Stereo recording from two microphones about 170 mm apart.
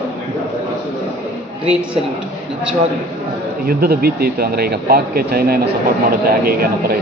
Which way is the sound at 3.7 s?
65° right (ahead or behind).